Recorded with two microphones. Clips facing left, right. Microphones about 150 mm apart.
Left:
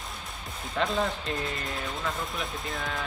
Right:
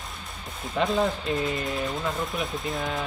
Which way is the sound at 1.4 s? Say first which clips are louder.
Right 6 dB; 20° right (ahead or behind).